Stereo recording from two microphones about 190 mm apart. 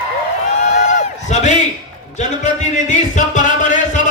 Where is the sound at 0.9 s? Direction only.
40° left (ahead or behind).